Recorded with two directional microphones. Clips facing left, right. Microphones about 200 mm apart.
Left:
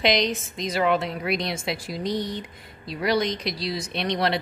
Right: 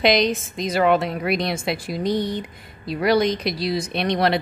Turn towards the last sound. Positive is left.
turn(degrees=-55)  # may be behind; listen again after turning